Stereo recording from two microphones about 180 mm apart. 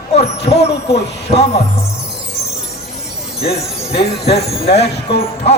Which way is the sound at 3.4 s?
35° left (ahead or behind).